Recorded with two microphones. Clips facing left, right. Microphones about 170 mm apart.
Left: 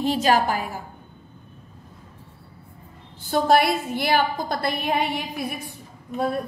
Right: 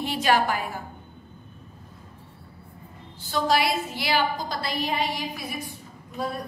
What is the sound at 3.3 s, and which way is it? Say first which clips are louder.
A woman's voice: left 5 dB; 55° left (ahead or behind).